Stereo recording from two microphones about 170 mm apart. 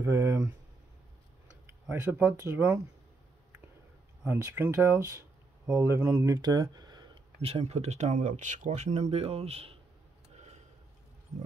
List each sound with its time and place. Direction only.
0.0 s speech: 20° right (ahead or behind)
1.9 s speech: 15° right (ahead or behind)
4.2 s speech: 10° right (ahead or behind)
7.4 s speech: 40° right (ahead or behind)
10.3 s a sound: 40° right (ahead or behind)